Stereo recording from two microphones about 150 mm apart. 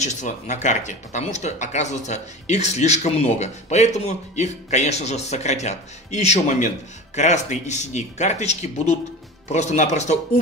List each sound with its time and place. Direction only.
0.0 s speech: 55° left (ahead or behind)